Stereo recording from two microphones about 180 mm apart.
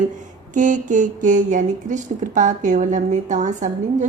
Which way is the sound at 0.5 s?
45° right (ahead or behind).